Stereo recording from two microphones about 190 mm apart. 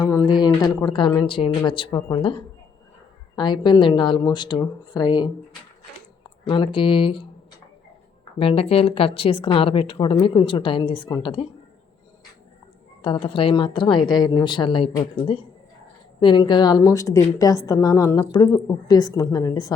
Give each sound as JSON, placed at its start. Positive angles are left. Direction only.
{"t": 0.3, "sound": "speech", "side_deg": 20}
{"t": 8.4, "sound": "speech", "side_deg": 30}
{"t": 13.0, "sound": "speech", "side_deg": 25}